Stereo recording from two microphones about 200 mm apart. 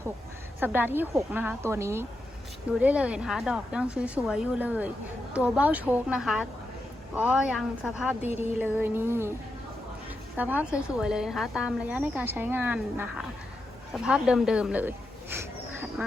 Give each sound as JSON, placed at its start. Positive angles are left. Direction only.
{"t": 0.6, "sound": "a woman's voice", "side_deg": -10}
{"t": 8.2, "sound": "a sound", "side_deg": 35}
{"t": 8.5, "sound": "speech", "side_deg": -10}
{"t": 10.3, "sound": "speech", "side_deg": -10}